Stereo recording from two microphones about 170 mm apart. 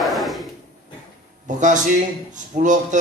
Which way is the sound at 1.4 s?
45° right (ahead or behind).